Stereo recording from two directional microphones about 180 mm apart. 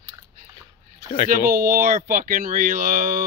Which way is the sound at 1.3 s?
55° right (ahead or behind).